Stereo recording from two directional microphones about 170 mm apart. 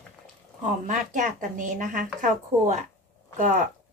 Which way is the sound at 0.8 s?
45° right (ahead or behind).